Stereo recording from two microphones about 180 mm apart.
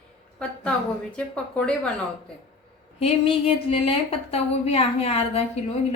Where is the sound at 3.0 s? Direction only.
35° left (ahead or behind).